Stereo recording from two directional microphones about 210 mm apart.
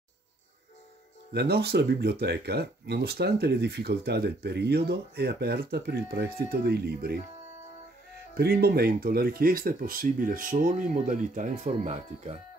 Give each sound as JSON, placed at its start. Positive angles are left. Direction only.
{"t": 1.3, "sound": "speech", "side_deg": -50}
{"t": 8.4, "sound": "speech", "side_deg": -45}